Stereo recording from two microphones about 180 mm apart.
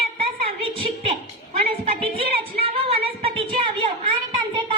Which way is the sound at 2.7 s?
30° right (ahead or behind).